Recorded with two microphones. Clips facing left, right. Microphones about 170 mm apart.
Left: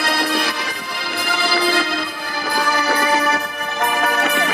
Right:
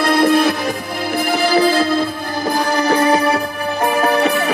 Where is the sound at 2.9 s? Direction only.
30° right (ahead or behind).